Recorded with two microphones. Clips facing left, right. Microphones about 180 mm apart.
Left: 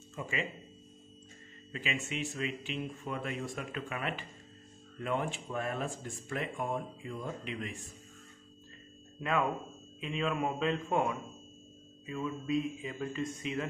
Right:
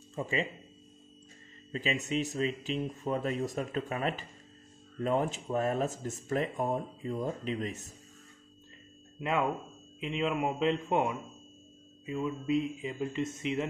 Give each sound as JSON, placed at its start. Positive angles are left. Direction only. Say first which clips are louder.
{"t": 0.1, "sound": "speech", "louder": "right 5 dB", "side_deg": -35}
{"t": 1.7, "sound": "speech", "louder": "right 5 dB", "side_deg": -35}
{"t": 9.2, "sound": "speech", "louder": "right 1 dB", "side_deg": -20}